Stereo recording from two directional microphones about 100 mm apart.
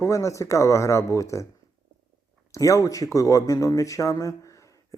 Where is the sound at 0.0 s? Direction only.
30° left (ahead or behind).